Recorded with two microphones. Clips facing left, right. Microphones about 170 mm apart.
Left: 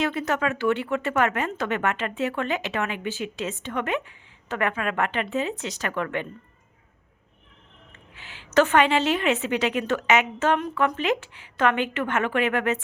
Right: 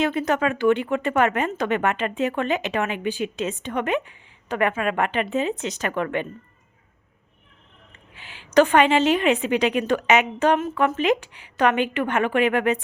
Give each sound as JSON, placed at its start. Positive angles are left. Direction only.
{"t": 0.0, "sound": "speech", "side_deg": -20}
{"t": 8.1, "sound": "a sound", "side_deg": -15}
{"t": 8.5, "sound": "a woman's voice", "side_deg": -15}